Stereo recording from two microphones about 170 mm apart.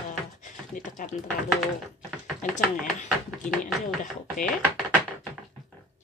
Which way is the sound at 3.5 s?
Centre (ahead or behind).